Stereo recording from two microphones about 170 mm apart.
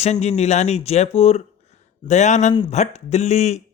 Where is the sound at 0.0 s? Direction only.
40° left (ahead or behind).